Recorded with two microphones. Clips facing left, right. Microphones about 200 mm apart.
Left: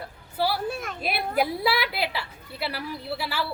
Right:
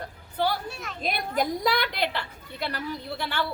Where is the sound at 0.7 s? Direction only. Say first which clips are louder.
Left 6 dB; 50° left (ahead or behind).